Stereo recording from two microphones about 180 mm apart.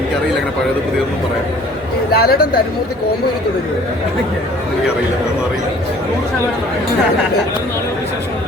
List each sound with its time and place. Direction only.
2.1 s speech: 60° left (ahead or behind)